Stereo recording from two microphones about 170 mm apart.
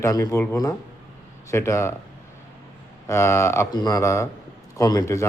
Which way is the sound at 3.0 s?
15° left (ahead or behind).